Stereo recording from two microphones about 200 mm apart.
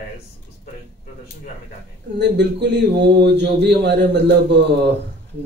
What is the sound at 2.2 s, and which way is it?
Speech, 60° right (ahead or behind).